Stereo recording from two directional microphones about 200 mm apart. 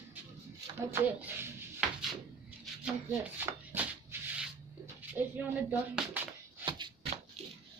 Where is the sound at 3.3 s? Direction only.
10° right (ahead or behind).